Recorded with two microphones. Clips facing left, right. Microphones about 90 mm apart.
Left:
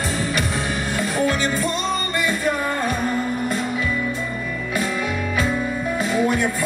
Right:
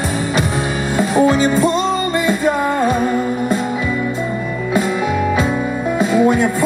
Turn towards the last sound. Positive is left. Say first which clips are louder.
# right 6 dB
turn(degrees=-25)  # may be behind; listen again after turning